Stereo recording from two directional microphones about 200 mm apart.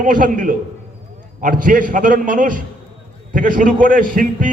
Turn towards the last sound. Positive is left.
turn(degrees=-45)  # may be behind; listen again after turning